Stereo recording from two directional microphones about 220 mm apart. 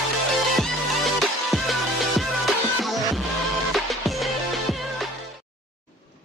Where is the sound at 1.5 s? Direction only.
Centre (ahead or behind).